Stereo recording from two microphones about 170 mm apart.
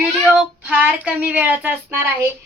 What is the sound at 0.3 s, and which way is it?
Speech, 10° right (ahead or behind).